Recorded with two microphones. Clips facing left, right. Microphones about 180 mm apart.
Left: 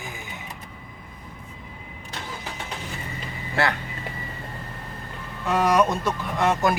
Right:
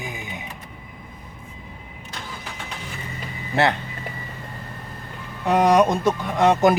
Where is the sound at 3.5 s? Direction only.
20° right (ahead or behind).